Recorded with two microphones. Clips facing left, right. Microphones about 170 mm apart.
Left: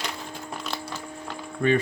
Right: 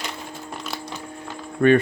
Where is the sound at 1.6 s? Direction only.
55° right (ahead or behind).